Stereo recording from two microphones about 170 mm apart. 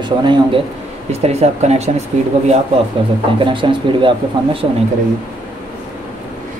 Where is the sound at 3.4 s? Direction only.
30° right (ahead or behind).